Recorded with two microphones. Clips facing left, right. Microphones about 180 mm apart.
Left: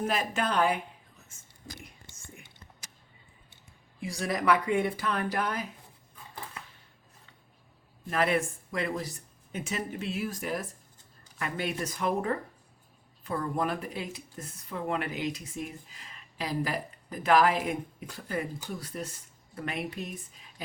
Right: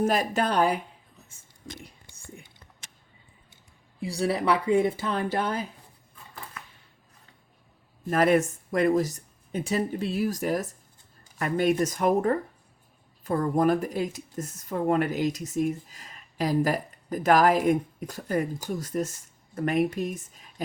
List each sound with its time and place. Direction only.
0.0 s speech: 40° right (ahead or behind)
1.3 s whispering: 20° right (ahead or behind)
1.8 s whispering: 35° right (ahead or behind)
4.0 s speech: 30° right (ahead or behind)
8.1 s speech: 45° right (ahead or behind)